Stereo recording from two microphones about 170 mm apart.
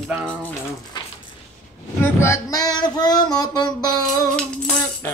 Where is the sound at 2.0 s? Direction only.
15° left (ahead or behind).